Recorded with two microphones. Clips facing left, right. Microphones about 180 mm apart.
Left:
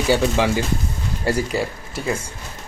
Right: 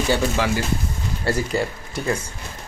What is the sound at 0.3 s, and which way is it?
A man's voice, 20° left (ahead or behind).